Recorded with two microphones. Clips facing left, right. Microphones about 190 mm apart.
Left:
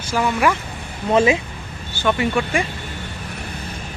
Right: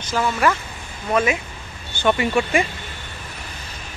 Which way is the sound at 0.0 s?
10° left (ahead or behind).